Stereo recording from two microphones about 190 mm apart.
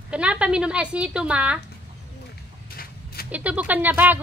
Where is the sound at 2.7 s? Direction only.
50° left (ahead or behind).